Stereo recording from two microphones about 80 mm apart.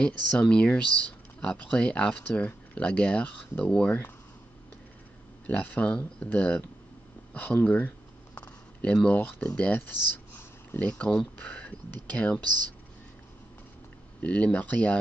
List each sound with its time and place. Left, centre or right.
0.0 s speech: centre
5.5 s speech: centre
8.4 s a sound: centre
9.6 s speech: centre
14.2 s speech: centre